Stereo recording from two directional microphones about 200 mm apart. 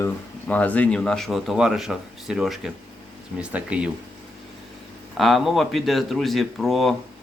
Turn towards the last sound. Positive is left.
turn(degrees=0)  # may be behind; listen again after turning